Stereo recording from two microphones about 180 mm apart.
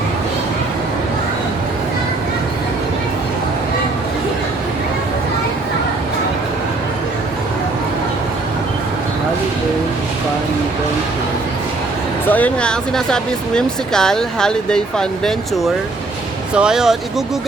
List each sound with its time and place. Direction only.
12.3 s speech: 5° left (ahead or behind)